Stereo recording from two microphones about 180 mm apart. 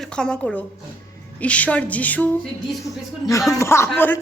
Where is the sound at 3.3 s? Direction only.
15° left (ahead or behind).